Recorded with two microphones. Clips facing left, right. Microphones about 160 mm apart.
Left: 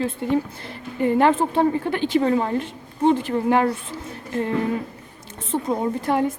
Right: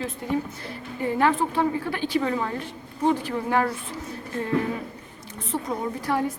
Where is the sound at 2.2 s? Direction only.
35° left (ahead or behind).